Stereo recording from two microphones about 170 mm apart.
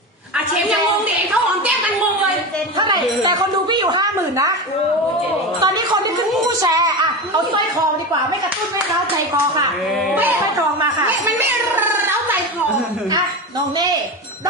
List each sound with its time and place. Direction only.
2.7 s speech: 25° right (ahead or behind)
5.5 s speech: 25° right (ahead or behind)
11.0 s a sound: 10° right (ahead or behind)